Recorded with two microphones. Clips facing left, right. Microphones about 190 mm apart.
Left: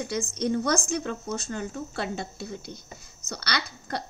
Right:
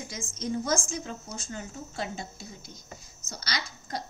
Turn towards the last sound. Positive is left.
turn(degrees=65)  # may be behind; listen again after turning